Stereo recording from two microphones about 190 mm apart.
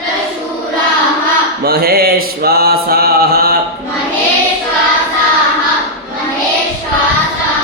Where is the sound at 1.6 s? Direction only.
55° right (ahead or behind).